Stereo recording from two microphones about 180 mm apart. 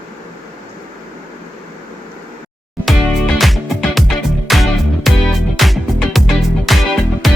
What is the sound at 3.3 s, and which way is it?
Music, centre (ahead or behind).